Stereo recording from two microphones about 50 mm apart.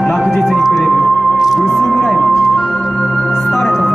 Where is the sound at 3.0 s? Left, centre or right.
Left.